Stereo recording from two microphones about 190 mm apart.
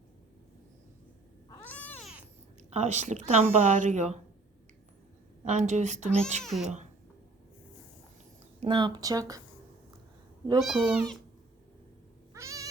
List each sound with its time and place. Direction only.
1.5 s cat: 10° left (ahead or behind)
2.7 s speech: 35° right (ahead or behind)
5.5 s speech: 35° right (ahead or behind)
6.4 s speech: centre (ahead or behind)
8.6 s speech: 25° right (ahead or behind)
10.6 s speech: centre (ahead or behind)
12.3 s cat: 15° right (ahead or behind)